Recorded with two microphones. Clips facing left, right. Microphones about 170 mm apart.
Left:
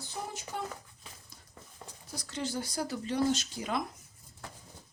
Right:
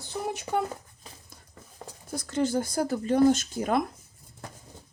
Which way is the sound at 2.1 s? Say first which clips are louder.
Right 10 dB; 50° right (ahead or behind).